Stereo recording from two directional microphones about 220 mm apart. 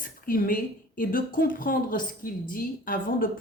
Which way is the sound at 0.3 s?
40° left (ahead or behind).